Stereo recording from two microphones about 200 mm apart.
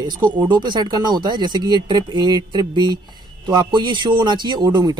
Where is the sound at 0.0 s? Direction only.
20° right (ahead or behind).